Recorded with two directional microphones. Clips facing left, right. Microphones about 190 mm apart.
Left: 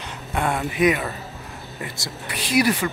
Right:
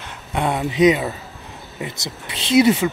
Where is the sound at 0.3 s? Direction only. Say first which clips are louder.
Right 3 dB; 15° right (ahead or behind).